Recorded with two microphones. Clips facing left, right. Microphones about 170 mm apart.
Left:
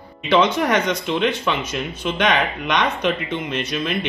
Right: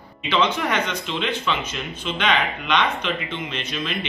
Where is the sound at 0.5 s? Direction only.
45° left (ahead or behind).